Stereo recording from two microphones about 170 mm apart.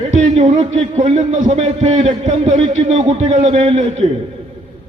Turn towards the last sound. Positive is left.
turn(degrees=-40)  # may be behind; listen again after turning